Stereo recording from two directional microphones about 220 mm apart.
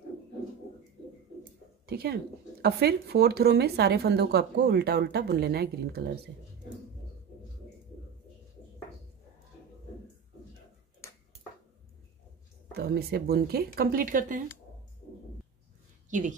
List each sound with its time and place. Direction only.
1.9 s speech: 45° right (ahead or behind)
12.7 s speech: 45° right (ahead or behind)
16.1 s a woman's voice: 35° right (ahead or behind)